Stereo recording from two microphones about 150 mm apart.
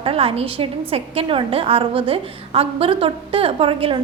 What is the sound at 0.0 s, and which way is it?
A woman's voice, 40° right (ahead or behind).